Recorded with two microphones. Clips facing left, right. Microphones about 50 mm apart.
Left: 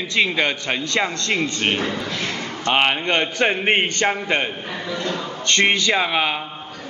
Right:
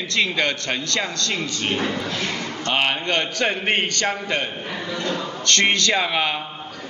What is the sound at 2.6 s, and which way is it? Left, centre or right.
A man's voice, left.